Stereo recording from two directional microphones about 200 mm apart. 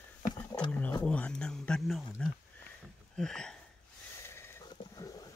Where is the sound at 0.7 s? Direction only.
5° left (ahead or behind).